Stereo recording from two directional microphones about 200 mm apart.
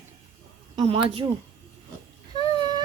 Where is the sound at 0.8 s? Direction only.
30° right (ahead or behind).